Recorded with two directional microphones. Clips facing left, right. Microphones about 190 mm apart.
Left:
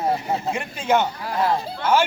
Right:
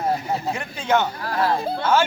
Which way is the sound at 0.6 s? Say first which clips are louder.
Left 1 dB; 10° left (ahead or behind).